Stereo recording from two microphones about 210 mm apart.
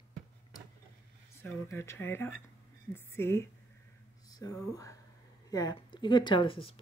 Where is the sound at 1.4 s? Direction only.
10° left (ahead or behind).